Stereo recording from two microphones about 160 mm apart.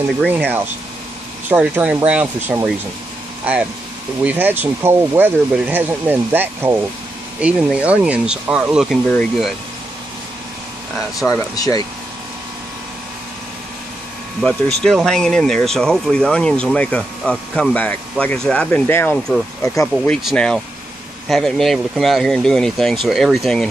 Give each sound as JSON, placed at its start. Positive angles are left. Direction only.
{"t": 0.3, "sound": "speech", "side_deg": -10}
{"t": 4.2, "sound": "speech", "side_deg": -10}
{"t": 11.2, "sound": "speech", "side_deg": 20}
{"t": 14.4, "sound": "speech", "side_deg": 5}
{"t": 20.1, "sound": "speech", "side_deg": 5}